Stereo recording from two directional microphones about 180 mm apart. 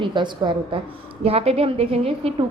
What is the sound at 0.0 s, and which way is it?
A woman's voice, 25° right (ahead or behind).